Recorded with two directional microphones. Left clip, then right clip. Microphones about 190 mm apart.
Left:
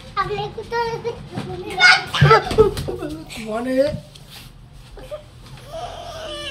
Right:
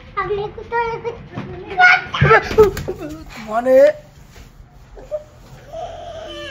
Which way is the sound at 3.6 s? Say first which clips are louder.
Right 9 dB; 55° right (ahead or behind).